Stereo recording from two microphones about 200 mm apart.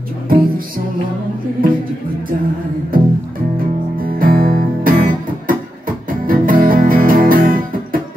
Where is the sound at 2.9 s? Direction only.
45° right (ahead or behind).